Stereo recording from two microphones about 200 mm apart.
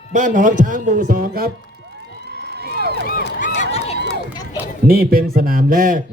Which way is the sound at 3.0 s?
45° left (ahead or behind).